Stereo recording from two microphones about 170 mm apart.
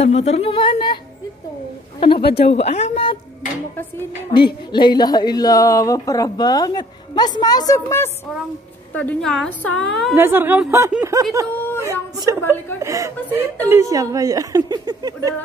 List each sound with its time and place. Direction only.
0.0 s a woman's voice: 40° left (ahead or behind)
2.0 s a man's voice: 30° left (ahead or behind)
2.2 s a woman's voice: 70° left (ahead or behind)
2.6 s a woman's voice: 40° left (ahead or behind)
4.7 s speech: 25° left (ahead or behind)
8.9 s a woman's voice: 5° left (ahead or behind)
10.1 s speech: 10° right (ahead or behind)